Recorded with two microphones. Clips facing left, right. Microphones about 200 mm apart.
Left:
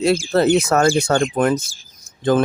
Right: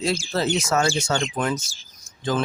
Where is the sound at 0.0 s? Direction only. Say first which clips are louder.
Left 8 dB; 55° left (ahead or behind).